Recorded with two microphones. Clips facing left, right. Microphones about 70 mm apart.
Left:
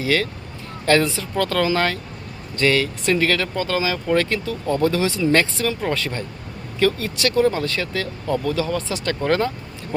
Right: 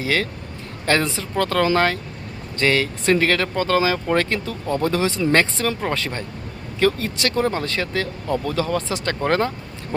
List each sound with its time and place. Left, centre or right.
0.0 s speech: right